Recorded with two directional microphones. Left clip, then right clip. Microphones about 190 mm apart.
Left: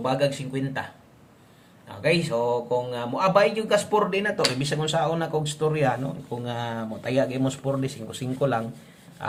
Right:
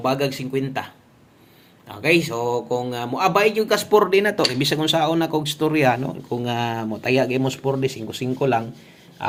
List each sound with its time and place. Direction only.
0.0 s speech: 35° right (ahead or behind)
1.9 s speech: 40° right (ahead or behind); by 8.6 s 20° right (ahead or behind)